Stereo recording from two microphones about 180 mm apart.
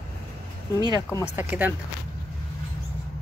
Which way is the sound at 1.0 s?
15° left (ahead or behind).